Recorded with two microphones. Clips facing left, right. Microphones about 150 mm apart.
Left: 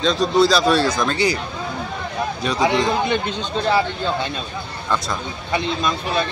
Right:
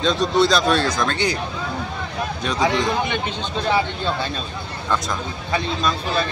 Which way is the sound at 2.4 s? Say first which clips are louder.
Left 1 dB; centre (ahead or behind).